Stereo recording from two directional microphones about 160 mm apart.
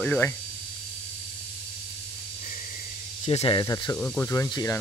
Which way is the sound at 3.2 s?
35° left (ahead or behind).